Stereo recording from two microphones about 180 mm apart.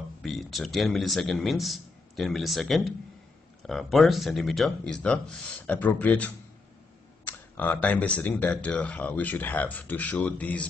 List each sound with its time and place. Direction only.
0.2 s a man's voice: centre (ahead or behind)